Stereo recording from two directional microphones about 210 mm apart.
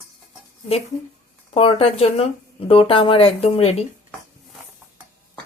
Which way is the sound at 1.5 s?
25° left (ahead or behind).